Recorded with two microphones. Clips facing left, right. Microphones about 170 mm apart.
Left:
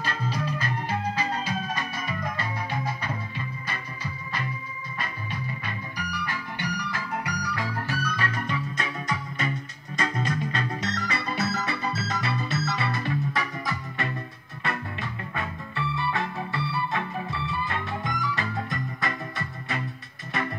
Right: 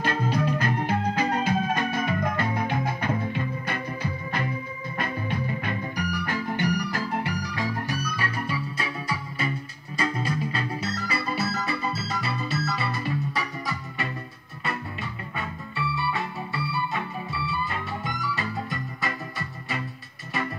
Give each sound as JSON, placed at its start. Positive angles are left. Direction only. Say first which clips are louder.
{"t": 0.0, "sound": "music", "louder": "right 5 dB", "side_deg": -55}
{"t": 7.2, "sound": "music", "louder": "right 2 dB", "side_deg": -20}
{"t": 9.9, "sound": "music", "louder": "right 1 dB", "side_deg": -5}
{"t": 15.9, "sound": "music", "louder": "left 1 dB", "side_deg": 0}